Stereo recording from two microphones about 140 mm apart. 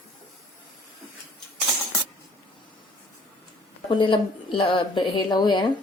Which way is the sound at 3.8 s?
35° left (ahead or behind).